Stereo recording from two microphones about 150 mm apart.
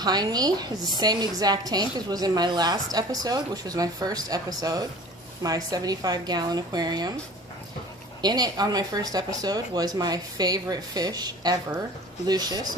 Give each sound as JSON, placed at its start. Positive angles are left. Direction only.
{"t": 0.0, "sound": "a woman's voice", "side_deg": -25}
{"t": 8.2, "sound": "a woman's voice", "side_deg": -25}